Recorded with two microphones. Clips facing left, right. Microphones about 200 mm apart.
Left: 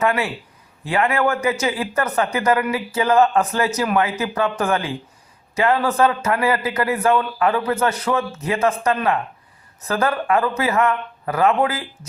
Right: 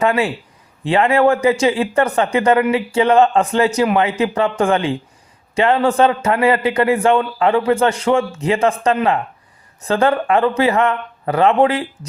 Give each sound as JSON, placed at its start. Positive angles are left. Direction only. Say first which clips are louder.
{"t": 0.0, "sound": "a man's voice", "louder": "right 4 dB", "side_deg": -30}